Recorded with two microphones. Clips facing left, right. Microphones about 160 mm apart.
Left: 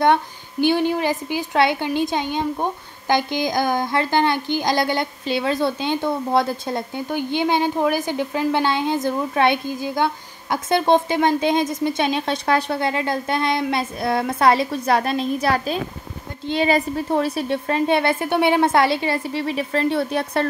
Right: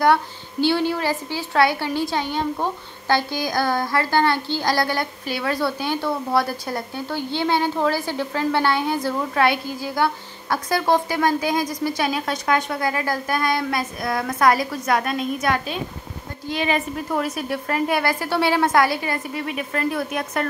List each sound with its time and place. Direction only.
0.0 s a woman's voice: 20° left (ahead or behind)